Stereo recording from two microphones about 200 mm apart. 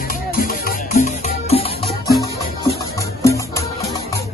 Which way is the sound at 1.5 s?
30° left (ahead or behind).